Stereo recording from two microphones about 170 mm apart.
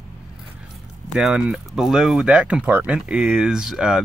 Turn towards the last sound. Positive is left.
turn(degrees=-5)  # may be behind; listen again after turning